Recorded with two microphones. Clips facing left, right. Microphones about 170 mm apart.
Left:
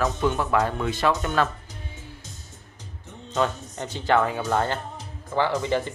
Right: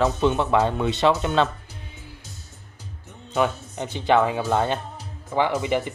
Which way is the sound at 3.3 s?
15° right (ahead or behind).